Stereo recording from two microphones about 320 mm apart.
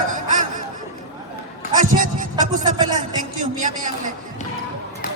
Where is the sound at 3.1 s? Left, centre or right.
Right.